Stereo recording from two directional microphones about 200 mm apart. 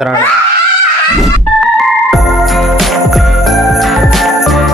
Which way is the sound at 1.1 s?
Centre (ahead or behind).